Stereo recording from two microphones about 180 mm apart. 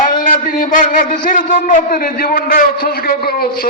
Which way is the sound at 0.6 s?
50° left (ahead or behind).